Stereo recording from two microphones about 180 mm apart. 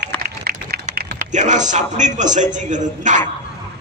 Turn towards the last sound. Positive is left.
turn(degrees=-45)  # may be behind; listen again after turning